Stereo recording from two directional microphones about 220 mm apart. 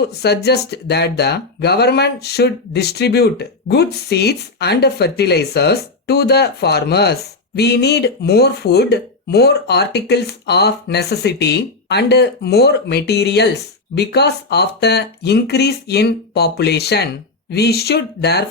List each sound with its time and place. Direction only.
0.1 s speech: 50° left (ahead or behind)